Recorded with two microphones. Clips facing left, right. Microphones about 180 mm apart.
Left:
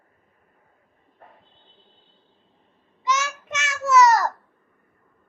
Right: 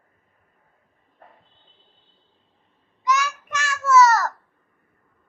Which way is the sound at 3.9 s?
15° left (ahead or behind).